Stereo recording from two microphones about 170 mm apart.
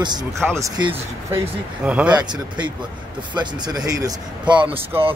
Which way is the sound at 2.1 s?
25° right (ahead or behind).